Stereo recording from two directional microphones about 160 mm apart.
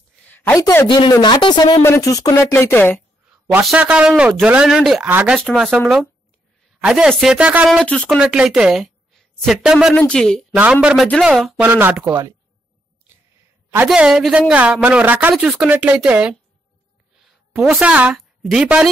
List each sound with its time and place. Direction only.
0.2 s a woman's voice: 15° left (ahead or behind)
1.8 s speech: 20° left (ahead or behind)
3.6 s a woman's voice: 5° right (ahead or behind)
7.8 s a woman's voice: 5° left (ahead or behind)
10.5 s a woman's voice: 10° right (ahead or behind)
13.8 s a woman's voice: 5° right (ahead or behind)
17.6 s a woman's voice: 5° right (ahead or behind)